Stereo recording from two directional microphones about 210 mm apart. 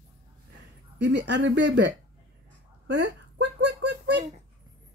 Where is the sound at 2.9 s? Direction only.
55° right (ahead or behind).